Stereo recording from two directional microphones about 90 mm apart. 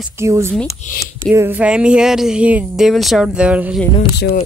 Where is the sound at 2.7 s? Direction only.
Centre (ahead or behind).